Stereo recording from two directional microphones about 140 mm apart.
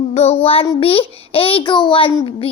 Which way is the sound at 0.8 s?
40° left (ahead or behind).